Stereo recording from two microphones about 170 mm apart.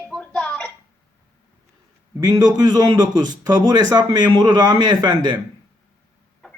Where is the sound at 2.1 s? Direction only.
20° right (ahead or behind).